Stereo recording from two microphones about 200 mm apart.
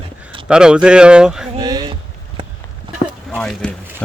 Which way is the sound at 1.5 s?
20° right (ahead or behind).